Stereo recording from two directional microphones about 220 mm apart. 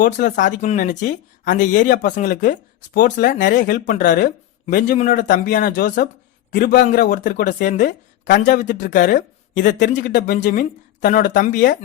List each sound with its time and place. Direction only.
0.0 s a man's voice: 40° left (ahead or behind)